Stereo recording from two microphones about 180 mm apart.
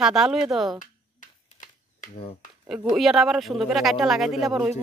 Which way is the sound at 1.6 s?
40° left (ahead or behind).